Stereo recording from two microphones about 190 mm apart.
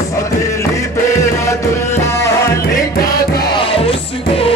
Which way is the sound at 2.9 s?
50° left (ahead or behind).